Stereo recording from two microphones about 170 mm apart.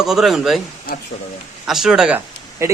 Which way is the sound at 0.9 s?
60° left (ahead or behind).